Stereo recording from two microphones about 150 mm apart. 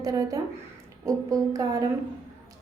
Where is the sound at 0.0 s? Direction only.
25° right (ahead or behind).